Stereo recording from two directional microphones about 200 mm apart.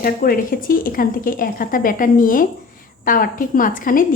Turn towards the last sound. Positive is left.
turn(degrees=45)  # may be behind; listen again after turning